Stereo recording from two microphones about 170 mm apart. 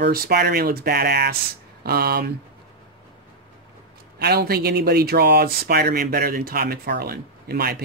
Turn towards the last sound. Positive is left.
turn(degrees=-65)  # may be behind; listen again after turning